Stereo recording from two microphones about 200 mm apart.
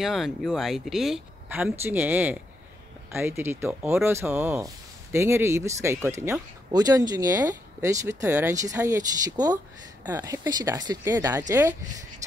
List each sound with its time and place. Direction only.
0.0 s speech: centre (ahead or behind)